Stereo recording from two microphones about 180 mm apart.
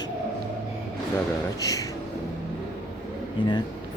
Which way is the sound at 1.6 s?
20° left (ahead or behind).